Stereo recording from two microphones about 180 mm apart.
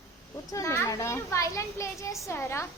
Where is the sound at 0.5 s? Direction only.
15° left (ahead or behind).